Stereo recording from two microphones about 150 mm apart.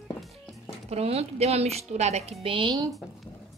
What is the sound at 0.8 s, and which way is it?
A woman's voice, 45° right (ahead or behind).